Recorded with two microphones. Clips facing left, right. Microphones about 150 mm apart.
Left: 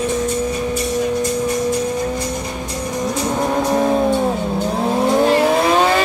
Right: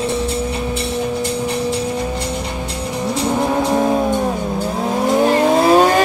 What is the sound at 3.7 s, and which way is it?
Music, 5° right (ahead or behind).